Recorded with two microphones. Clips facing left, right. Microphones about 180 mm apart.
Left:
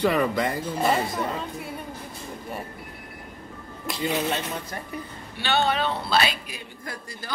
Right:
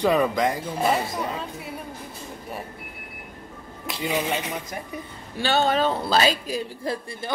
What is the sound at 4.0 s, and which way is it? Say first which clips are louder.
Speech: even; 10° right (ahead or behind).